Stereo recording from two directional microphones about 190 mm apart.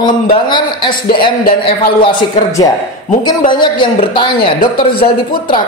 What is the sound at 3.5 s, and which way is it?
A woman's voice, 25° left (ahead or behind).